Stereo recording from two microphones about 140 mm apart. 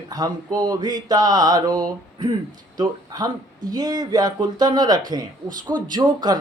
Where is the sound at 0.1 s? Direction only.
30° right (ahead or behind).